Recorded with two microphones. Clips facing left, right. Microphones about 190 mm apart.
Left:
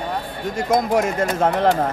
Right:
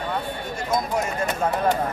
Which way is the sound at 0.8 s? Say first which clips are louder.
Left 6 dB; 90° left.